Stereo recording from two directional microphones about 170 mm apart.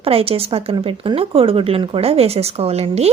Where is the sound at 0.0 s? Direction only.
35° right (ahead or behind).